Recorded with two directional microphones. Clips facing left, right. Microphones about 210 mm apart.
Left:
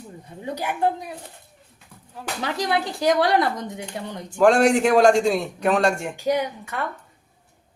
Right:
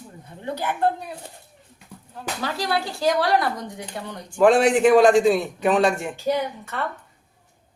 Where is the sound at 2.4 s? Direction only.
20° left (ahead or behind).